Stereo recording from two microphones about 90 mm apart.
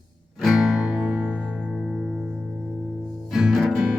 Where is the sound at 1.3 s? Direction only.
10° left (ahead or behind).